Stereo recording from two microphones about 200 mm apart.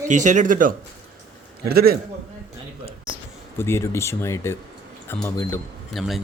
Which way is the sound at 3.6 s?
10° left (ahead or behind).